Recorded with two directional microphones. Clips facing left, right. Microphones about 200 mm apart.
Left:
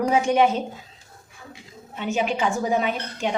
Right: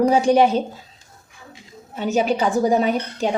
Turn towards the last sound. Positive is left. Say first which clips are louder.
# right 5 dB
turn(degrees=-35)  # may be behind; listen again after turning